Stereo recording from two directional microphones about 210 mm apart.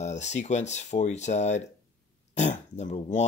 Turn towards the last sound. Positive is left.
turn(degrees=35)  # may be behind; listen again after turning